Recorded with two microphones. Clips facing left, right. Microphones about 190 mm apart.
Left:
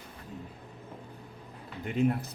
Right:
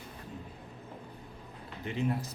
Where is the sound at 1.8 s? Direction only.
55° left (ahead or behind).